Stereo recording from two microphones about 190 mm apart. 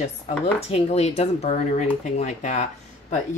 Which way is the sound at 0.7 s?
35° left (ahead or behind).